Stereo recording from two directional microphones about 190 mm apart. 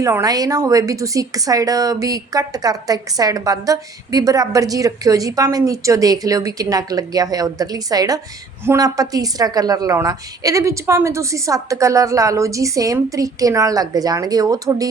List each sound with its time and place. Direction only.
0.0 s a woman's voice: 15° right (ahead or behind)